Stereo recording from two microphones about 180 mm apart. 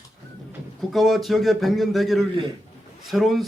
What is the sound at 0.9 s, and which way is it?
A man's voice, centre (ahead or behind).